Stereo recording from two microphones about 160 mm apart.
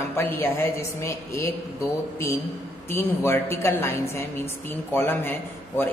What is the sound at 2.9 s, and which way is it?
A man's voice, 15° left (ahead or behind).